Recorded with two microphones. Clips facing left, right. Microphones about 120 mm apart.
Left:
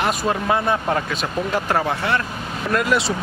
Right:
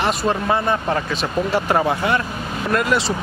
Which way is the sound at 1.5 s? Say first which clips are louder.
Right 3 dB; 10° right (ahead or behind).